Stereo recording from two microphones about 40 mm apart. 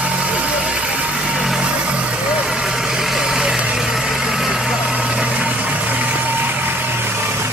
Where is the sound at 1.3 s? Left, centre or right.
Centre.